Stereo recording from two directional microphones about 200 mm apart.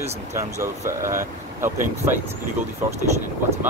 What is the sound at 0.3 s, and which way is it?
Speech, 15° right (ahead or behind).